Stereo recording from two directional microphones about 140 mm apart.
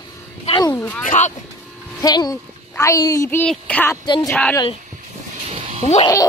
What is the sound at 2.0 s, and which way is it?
Speech, 30° left (ahead or behind).